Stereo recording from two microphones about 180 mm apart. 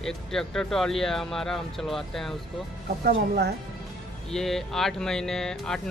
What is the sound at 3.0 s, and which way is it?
Speech, 65° right (ahead or behind).